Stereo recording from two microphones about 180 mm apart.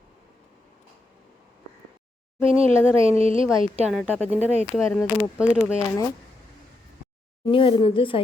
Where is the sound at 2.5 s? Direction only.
30° right (ahead or behind).